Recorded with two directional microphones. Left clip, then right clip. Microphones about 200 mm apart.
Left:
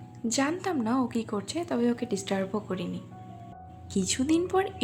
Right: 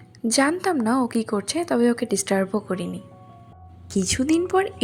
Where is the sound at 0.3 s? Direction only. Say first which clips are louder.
Right 8 dB; 35° right (ahead or behind).